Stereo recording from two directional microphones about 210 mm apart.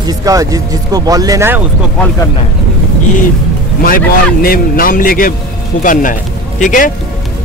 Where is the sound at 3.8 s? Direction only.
45° left (ahead or behind).